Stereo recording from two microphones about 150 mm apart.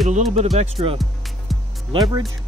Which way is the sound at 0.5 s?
40° right (ahead or behind).